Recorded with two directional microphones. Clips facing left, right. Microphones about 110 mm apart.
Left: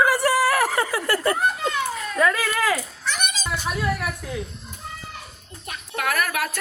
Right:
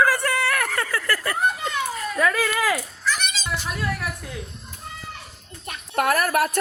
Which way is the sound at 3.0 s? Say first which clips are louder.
Right 1 dB; 60° left (ahead or behind).